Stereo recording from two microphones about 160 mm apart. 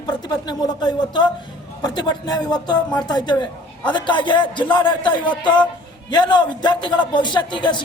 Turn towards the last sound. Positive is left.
turn(degrees=30)  # may be behind; listen again after turning